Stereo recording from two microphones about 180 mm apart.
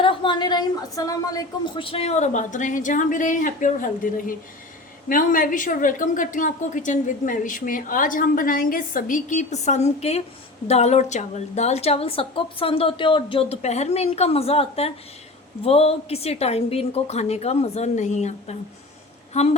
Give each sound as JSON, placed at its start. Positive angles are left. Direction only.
{"t": 0.0, "sound": "a woman's voice", "side_deg": 30}